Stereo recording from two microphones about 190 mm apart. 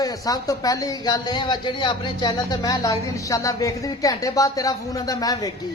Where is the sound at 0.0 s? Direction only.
20° left (ahead or behind).